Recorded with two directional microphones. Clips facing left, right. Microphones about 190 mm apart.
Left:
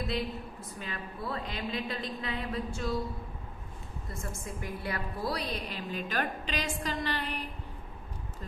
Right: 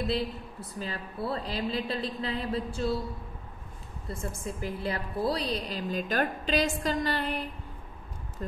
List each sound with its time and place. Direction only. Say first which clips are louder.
0.7 s a woman's voice: right 5 dB; 35° right (ahead or behind)
4.1 s a woman's voice: right 5 dB; 30° right (ahead or behind)